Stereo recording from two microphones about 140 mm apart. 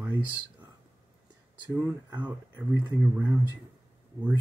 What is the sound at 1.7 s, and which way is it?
Speech, 10° right (ahead or behind).